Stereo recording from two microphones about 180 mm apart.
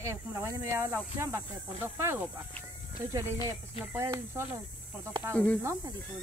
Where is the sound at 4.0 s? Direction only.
15° right (ahead or behind).